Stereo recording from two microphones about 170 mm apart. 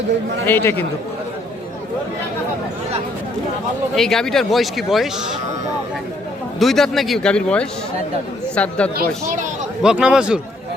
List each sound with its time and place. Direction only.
0.4 s speech: 15° left (ahead or behind)
3.9 s speech: centre (ahead or behind)
6.6 s speech: centre (ahead or behind)
9.0 s speech: 50° right (ahead or behind)
9.8 s speech: 5° right (ahead or behind)